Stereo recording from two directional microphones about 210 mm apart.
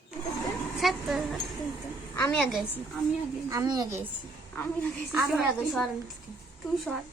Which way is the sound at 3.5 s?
15° right (ahead or behind).